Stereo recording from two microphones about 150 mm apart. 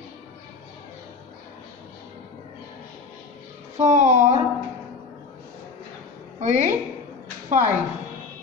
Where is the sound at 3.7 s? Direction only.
50° right (ahead or behind).